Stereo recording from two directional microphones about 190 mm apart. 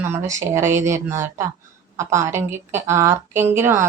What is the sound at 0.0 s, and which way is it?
Speech, 15° right (ahead or behind).